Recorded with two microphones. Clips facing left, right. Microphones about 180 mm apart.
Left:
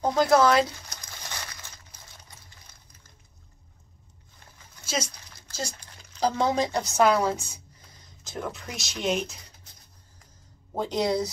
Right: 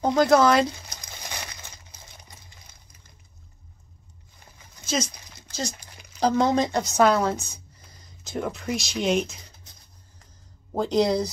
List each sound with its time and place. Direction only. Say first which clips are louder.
0.0 s a woman's voice: right 2 dB; centre (ahead or behind)
0.8 s a sound: right 2 dB; 15° right (ahead or behind)
4.8 s speech: right 4 dB; 5° left (ahead or behind)
5.1 s a sound: right 3 dB; 15° right (ahead or behind)
6.2 s a woman's voice: right 3 dB; 5° left (ahead or behind)
10.8 s a woman's voice: right 4 dB; centre (ahead or behind)